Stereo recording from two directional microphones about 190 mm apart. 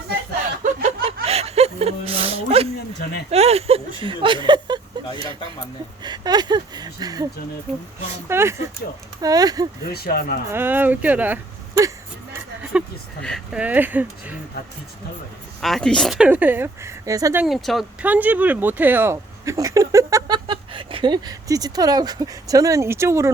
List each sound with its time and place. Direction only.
0.6 s chuckle: 35° right (ahead or behind)
3.2 s speech: 35° right (ahead or behind)
8.3 s speech: 15° right (ahead or behind)
9.9 s speech: 55° left (ahead or behind)
10.5 s speech: 10° right (ahead or behind)
12.7 s a sound: 5° right (ahead or behind)
13.2 s speech: centre (ahead or behind)
15.6 s speech: centre (ahead or behind); by 17.4 s 15° right (ahead or behind)
17.4 s speech: centre (ahead or behind)